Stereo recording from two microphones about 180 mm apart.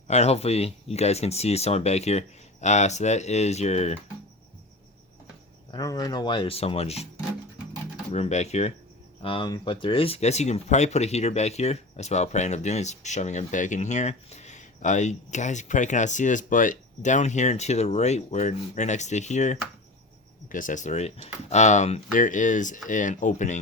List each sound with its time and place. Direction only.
0.1 s speech: 35° left (ahead or behind)
5.7 s speech: 20° left (ahead or behind)
8.1 s speech: 40° left (ahead or behind)
9.2 s speech: 30° left (ahead or behind); by 23.6 s 45° left (ahead or behind)